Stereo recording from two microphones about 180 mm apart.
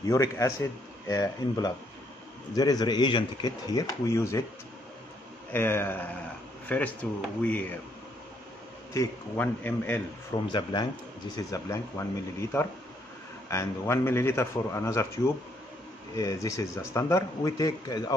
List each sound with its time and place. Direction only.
0.0 s a man's voice: 15° left (ahead or behind)
5.5 s a man's voice: 10° left (ahead or behind)
8.9 s a man's voice: 15° left (ahead or behind)
10.5 s a man's voice: 25° left (ahead or behind)